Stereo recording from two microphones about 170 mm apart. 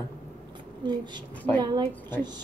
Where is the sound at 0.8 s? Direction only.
25° right (ahead or behind).